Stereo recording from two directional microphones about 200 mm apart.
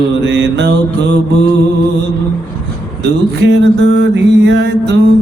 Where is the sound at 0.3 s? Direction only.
60° right (ahead or behind).